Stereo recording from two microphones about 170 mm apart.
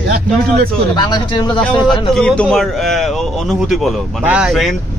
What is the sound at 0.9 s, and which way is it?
Speech, 25° left (ahead or behind).